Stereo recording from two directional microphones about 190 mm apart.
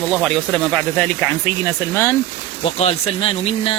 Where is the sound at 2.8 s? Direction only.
30° left (ahead or behind).